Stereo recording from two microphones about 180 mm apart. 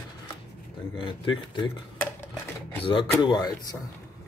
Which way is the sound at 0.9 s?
25° left (ahead or behind).